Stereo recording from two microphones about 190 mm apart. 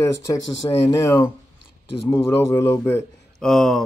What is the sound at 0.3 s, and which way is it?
Speech, 20° left (ahead or behind).